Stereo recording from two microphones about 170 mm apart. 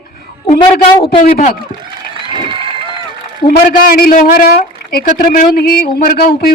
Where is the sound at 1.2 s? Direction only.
55° left (ahead or behind).